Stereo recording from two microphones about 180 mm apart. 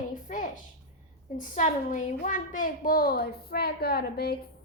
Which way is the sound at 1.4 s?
45° left (ahead or behind).